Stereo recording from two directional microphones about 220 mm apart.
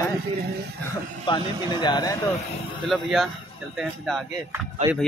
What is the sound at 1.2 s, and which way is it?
Speech, 20° left (ahead or behind).